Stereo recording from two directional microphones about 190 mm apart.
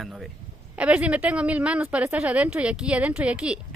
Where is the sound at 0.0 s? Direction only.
Centre (ahead or behind).